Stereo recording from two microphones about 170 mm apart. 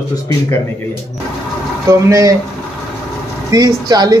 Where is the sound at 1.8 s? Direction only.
20° right (ahead or behind).